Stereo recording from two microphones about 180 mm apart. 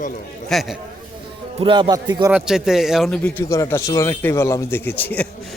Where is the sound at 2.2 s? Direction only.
5° right (ahead or behind).